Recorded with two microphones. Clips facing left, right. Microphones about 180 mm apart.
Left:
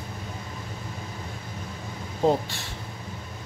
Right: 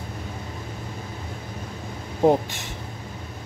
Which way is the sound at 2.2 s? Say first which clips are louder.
Right 4 dB; 15° right (ahead or behind).